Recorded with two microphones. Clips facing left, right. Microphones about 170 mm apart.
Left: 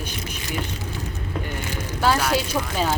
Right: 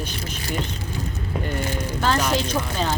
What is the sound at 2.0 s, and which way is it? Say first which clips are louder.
Speech: left 1 dB; 10° left (ahead or behind).